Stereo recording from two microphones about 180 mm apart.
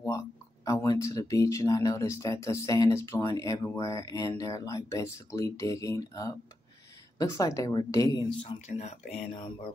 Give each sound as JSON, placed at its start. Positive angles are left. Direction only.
{"t": 0.7, "sound": "speech", "side_deg": 20}